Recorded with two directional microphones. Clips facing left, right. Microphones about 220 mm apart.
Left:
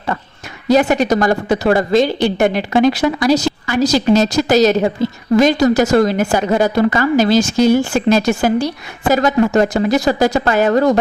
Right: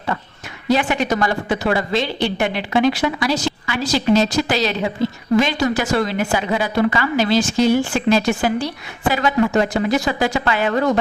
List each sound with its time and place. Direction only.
0.7 s a woman's voice: 40° left (ahead or behind)